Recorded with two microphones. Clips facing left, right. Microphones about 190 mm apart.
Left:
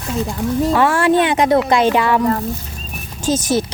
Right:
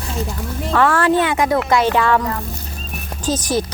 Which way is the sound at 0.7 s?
10° left (ahead or behind).